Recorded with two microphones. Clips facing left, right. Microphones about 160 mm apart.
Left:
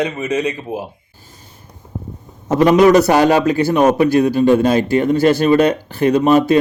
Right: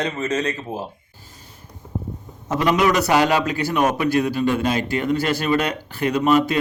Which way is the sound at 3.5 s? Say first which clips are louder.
Left 7 dB; 20° left (ahead or behind).